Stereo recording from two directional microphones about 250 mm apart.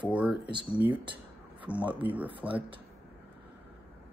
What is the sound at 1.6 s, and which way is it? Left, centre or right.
Speech, centre.